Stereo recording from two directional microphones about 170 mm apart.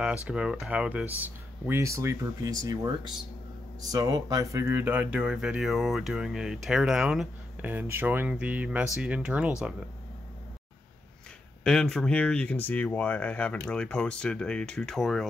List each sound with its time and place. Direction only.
0.0 s speech: 5° right (ahead or behind)
11.6 s speech: 5° left (ahead or behind)